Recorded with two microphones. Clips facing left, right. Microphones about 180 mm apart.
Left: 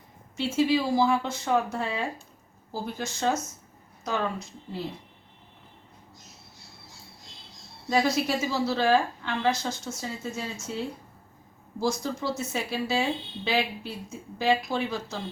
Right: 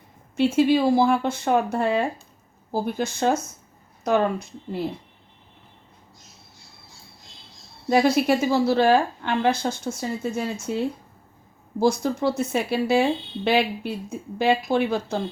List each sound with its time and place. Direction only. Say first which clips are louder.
0.3 s a woman's voice: right 6 dB; 60° right (ahead or behind)
7.9 s a woman's voice: right 6 dB; 55° right (ahead or behind)
11.8 s a woman's voice: right 7 dB; 60° right (ahead or behind)